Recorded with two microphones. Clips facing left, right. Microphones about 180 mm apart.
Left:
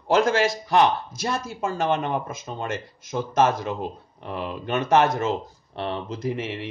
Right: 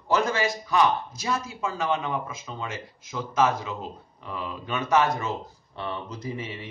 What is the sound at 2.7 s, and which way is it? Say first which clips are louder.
Speech: left 6 dB; 75° left (ahead or behind).